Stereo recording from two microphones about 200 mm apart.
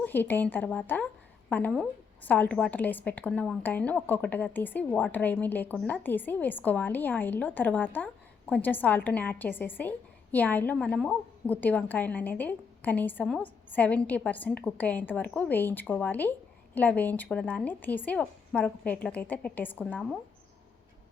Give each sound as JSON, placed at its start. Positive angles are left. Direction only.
{"t": 0.0, "sound": "a woman's voice", "side_deg": 10}